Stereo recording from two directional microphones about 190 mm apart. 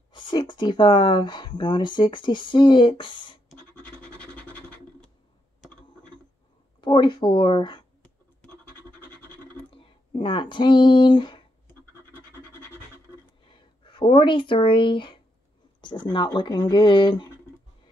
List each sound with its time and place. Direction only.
0.1 s speech: 25° left (ahead or behind)
4.0 s scratch: 5° left (ahead or behind)
6.8 s speech: 25° left (ahead or behind)
9.7 s speech: 25° left (ahead or behind)
13.5 s speech: 25° left (ahead or behind)